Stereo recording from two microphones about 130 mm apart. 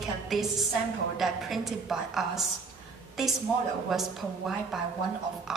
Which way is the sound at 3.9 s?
Centre (ahead or behind).